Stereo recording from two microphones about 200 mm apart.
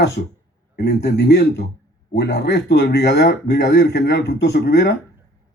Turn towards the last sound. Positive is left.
turn(degrees=55)  # may be behind; listen again after turning